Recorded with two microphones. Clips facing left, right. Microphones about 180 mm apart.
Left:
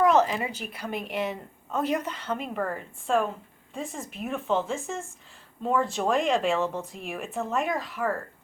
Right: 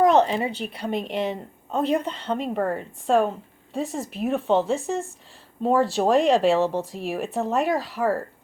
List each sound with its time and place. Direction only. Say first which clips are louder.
0.0 s a woman's voice: right 4 dB; 30° right (ahead or behind)